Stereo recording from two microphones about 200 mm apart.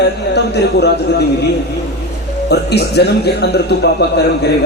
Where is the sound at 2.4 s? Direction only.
55° left (ahead or behind).